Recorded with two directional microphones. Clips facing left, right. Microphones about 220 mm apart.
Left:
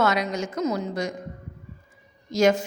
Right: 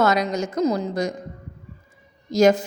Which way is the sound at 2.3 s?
35° right (ahead or behind).